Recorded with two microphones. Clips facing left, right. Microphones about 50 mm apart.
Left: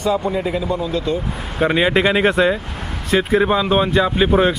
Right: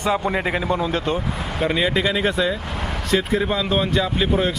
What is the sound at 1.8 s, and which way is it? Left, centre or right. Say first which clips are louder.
Speech: left 5 dB; left.